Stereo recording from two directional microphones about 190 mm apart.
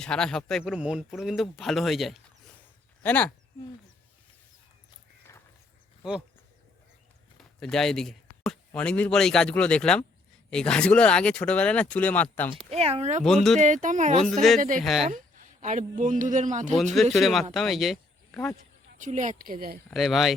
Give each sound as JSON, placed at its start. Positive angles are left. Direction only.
{"t": 0.0, "sound": "speech", "side_deg": 5}
{"t": 7.3, "sound": "speech", "side_deg": 0}
{"t": 12.7, "sound": "speech", "side_deg": -35}
{"t": 13.2, "sound": "speech", "side_deg": 0}
{"t": 13.6, "sound": "speech", "side_deg": -40}
{"t": 14.8, "sound": "speech", "side_deg": 0}
{"t": 15.0, "sound": "a sound", "side_deg": -40}
{"t": 16.0, "sound": "speech", "side_deg": -40}
{"t": 16.9, "sound": "speech", "side_deg": 0}
{"t": 18.9, "sound": "speech", "side_deg": -40}
{"t": 19.9, "sound": "speech", "side_deg": 0}